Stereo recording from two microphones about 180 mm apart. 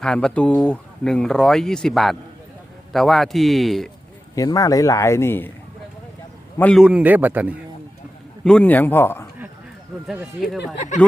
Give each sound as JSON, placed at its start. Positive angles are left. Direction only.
{"t": 0.0, "sound": "speech", "side_deg": 5}
{"t": 4.4, "sound": "speech", "side_deg": 20}
{"t": 6.6, "sound": "speech", "side_deg": 5}
{"t": 6.8, "sound": "a man's voice", "side_deg": -5}
{"t": 8.4, "sound": "speech", "side_deg": 5}
{"t": 10.1, "sound": "speech", "side_deg": 0}
{"t": 10.8, "sound": "speech", "side_deg": 40}